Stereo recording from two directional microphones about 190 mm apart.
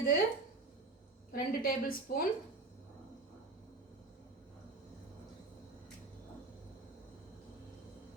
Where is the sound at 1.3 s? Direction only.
50° left (ahead or behind).